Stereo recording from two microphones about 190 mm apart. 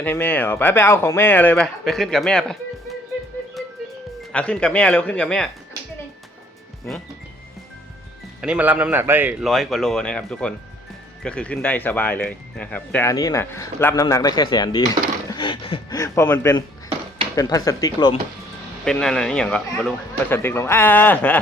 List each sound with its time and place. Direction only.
0.0 s speech: 10° left (ahead or behind)
4.3 s speech: 5° left (ahead or behind)
8.4 s speech: 5° right (ahead or behind); by 18.1 s 20° left (ahead or behind)
18.9 s speech: 5° left (ahead or behind)